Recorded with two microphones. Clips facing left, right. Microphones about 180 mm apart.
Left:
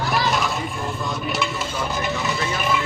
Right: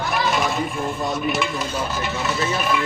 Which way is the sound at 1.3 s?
Centre (ahead or behind).